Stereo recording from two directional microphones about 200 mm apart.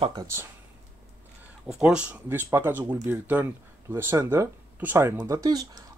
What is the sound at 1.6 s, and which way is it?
Speech, 5° right (ahead or behind).